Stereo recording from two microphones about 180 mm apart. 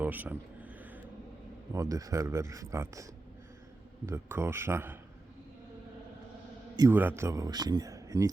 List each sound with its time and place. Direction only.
0.0 s a sound: 10° right (ahead or behind)
1.7 s speech: 20° right (ahead or behind)
6.7 s speech: 15° right (ahead or behind)